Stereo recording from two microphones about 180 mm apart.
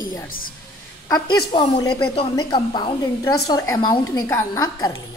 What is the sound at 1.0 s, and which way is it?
A woman's voice, 20° left (ahead or behind).